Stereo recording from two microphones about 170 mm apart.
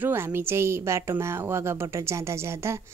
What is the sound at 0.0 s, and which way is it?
A woman's voice, 15° right (ahead or behind).